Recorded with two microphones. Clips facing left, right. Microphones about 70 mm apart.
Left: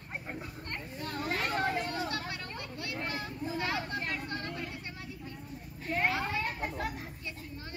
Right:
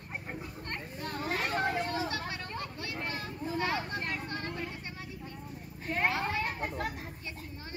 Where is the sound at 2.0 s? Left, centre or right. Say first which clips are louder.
Right 1 dB; right.